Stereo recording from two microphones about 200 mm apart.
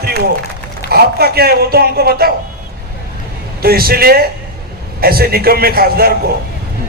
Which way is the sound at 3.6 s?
50° right (ahead or behind).